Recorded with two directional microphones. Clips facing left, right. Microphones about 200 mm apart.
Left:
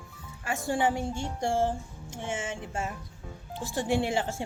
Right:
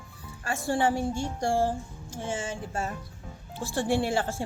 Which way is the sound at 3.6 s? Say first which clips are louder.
Right 1 dB; 20° left (ahead or behind).